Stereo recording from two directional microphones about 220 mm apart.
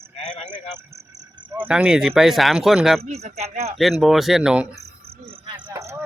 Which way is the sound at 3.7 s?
Centre (ahead or behind).